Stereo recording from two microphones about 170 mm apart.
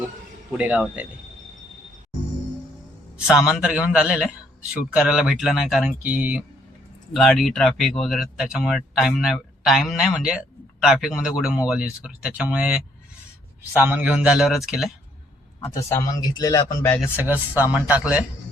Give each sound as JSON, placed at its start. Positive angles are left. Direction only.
{"t": 0.5, "sound": "speech", "side_deg": -5}
{"t": 3.2, "sound": "speech", "side_deg": -5}
{"t": 15.7, "sound": "speech", "side_deg": 20}
{"t": 17.0, "sound": "speech", "side_deg": -10}